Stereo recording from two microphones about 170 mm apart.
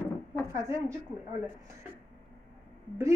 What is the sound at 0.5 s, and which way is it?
Speech, 15° right (ahead or behind).